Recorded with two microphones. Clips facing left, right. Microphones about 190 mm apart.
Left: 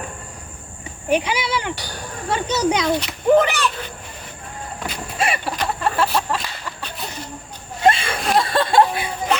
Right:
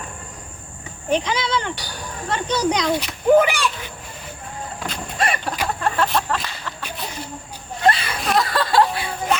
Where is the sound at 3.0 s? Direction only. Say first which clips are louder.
Right 1 dB; 5° right (ahead or behind).